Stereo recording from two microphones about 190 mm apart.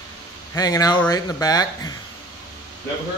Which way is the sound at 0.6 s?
20° left (ahead or behind).